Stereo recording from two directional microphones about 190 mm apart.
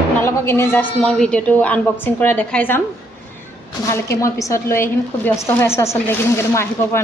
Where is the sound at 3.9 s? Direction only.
15° left (ahead or behind).